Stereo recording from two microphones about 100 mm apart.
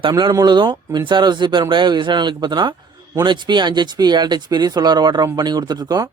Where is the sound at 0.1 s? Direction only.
45° right (ahead or behind).